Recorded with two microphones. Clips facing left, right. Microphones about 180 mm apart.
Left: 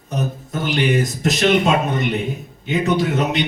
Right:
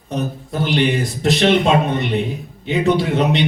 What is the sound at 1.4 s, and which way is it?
Speech, 35° right (ahead or behind).